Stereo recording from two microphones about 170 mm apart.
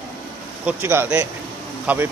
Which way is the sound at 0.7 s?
15° right (ahead or behind).